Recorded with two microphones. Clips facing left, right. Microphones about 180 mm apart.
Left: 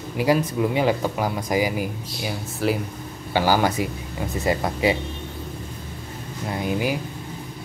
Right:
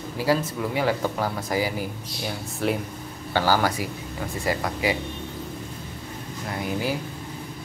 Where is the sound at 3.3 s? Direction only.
15° left (ahead or behind).